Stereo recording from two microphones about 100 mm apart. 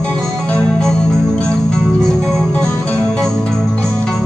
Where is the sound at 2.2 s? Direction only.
5° left (ahead or behind).